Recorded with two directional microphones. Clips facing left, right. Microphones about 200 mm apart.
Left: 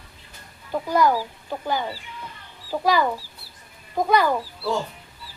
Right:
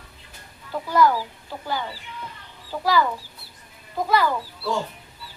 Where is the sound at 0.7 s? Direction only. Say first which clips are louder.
Even; 15° left (ahead or behind).